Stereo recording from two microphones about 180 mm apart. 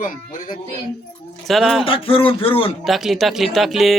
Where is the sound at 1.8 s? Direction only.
30° left (ahead or behind).